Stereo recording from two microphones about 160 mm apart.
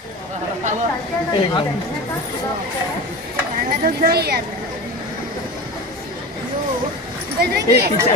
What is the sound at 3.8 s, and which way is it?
Speech, 70° right (ahead or behind).